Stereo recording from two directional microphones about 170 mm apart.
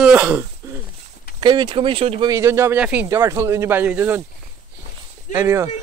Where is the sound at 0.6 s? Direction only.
15° right (ahead or behind).